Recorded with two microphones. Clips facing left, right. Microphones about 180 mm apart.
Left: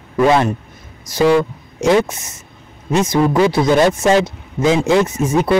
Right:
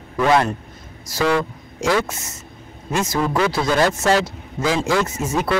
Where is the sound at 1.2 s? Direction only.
20° left (ahead or behind).